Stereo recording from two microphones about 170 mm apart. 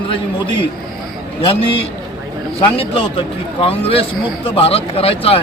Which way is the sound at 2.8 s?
30° left (ahead or behind).